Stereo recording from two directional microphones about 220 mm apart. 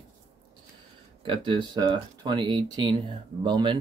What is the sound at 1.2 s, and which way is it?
Speech, 20° right (ahead or behind).